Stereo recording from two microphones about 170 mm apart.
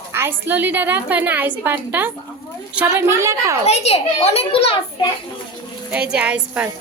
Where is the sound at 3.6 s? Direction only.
40° left (ahead or behind).